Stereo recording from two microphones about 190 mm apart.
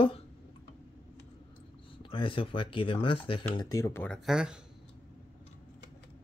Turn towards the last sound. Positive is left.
turn(degrees=-5)  # may be behind; listen again after turning